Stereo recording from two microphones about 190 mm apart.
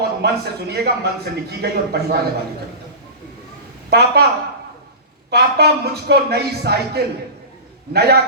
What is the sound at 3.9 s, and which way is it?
Speech, 60° right (ahead or behind).